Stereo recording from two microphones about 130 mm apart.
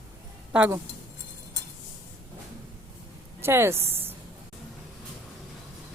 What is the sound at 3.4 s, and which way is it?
Speech, 20° right (ahead or behind).